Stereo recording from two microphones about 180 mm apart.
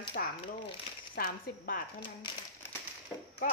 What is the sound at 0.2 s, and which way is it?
Speech, 55° left (ahead or behind).